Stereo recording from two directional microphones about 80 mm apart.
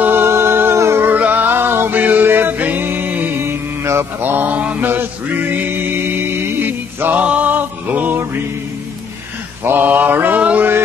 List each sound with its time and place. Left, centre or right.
0.0 s music: right
1.0 s music: right
4.2 s mantra: right
9.7 s mantra: right